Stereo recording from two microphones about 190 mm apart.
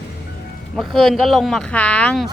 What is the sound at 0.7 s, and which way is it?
Speech, centre (ahead or behind).